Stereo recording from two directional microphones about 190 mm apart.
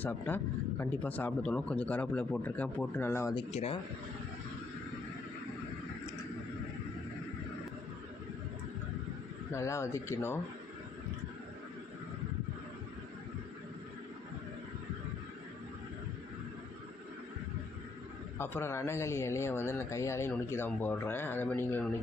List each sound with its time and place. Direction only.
0.0 s speech: 10° left (ahead or behind)
3.3 s speech: 30° left (ahead or behind)
9.5 s speech: 15° left (ahead or behind)
18.3 s speech: 10° left (ahead or behind)